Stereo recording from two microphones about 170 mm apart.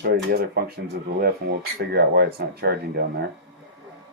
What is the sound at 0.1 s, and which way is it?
Speech, 65° right (ahead or behind).